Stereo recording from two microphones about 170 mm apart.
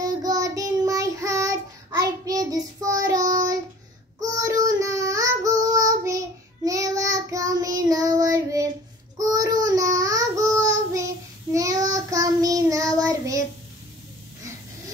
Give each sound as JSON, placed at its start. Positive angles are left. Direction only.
{"t": 0.0, "sound": "child singing", "side_deg": -20}